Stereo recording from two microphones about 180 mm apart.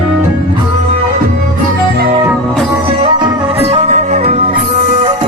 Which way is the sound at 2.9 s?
30° right (ahead or behind).